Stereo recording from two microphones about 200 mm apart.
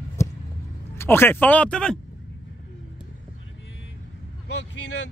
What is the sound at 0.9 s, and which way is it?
Speech, 10° left (ahead or behind).